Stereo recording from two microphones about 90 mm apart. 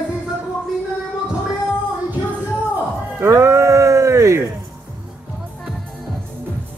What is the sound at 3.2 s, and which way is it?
Music, 30° right (ahead or behind).